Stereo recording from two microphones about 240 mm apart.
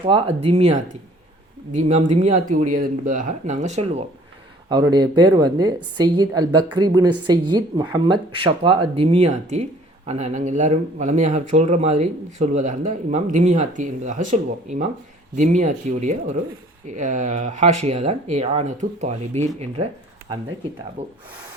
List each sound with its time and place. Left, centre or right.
0.0 s speech: right
4.7 s a woman's voice: centre